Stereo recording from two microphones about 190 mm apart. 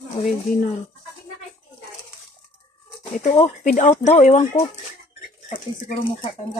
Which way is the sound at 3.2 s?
30° left (ahead or behind).